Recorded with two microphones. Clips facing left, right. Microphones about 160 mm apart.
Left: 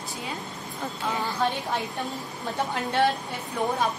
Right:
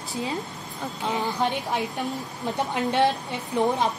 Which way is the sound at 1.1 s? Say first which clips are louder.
Right 2 dB; 15° right (ahead or behind).